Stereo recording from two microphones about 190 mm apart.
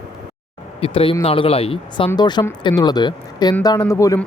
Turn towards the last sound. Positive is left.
turn(degrees=15)  # may be behind; listen again after turning